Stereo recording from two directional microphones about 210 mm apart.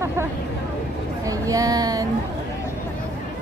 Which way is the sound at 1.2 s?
15° right (ahead or behind).